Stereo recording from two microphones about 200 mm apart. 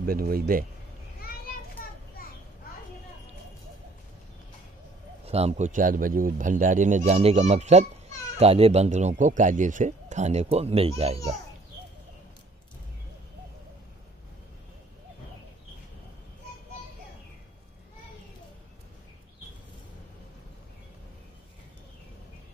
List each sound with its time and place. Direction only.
0.0 s speech: 50° right (ahead or behind)
5.2 s speech: 30° right (ahead or behind)